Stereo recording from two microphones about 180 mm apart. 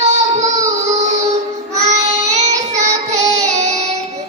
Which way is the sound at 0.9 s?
40° right (ahead or behind).